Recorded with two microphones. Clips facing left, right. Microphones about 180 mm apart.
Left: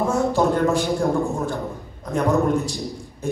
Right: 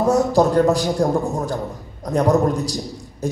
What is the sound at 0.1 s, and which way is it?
Speech, 40° right (ahead or behind).